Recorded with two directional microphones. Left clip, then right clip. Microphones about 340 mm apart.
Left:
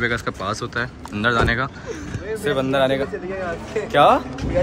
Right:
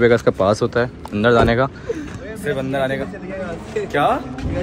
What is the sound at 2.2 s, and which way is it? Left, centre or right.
Speech, centre.